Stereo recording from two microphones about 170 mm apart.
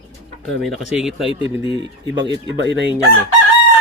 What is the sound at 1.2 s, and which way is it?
Speech, 30° left (ahead or behind).